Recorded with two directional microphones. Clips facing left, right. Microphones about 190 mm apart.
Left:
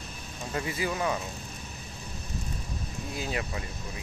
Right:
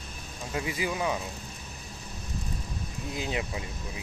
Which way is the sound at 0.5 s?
15° right (ahead or behind).